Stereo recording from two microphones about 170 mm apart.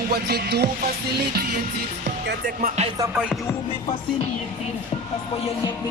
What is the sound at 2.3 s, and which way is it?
Music, 55° right (ahead or behind).